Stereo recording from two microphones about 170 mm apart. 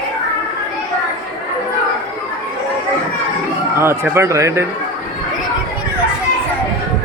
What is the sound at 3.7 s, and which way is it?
Speech, 15° right (ahead or behind).